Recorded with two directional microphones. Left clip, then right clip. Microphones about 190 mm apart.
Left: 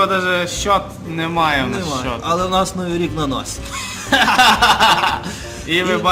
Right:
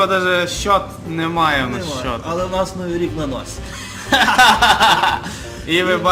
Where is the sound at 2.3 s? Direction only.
40° left (ahead or behind).